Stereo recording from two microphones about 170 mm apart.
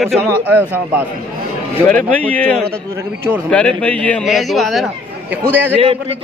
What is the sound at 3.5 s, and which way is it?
A man's voice, 5° left (ahead or behind).